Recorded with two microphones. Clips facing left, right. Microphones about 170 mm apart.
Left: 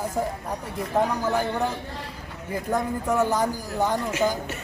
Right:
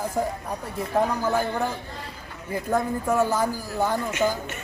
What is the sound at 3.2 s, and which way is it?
Speech, 15° left (ahead or behind).